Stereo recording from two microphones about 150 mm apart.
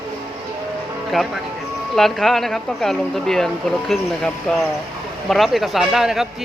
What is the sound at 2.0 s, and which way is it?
Speech, centre (ahead or behind).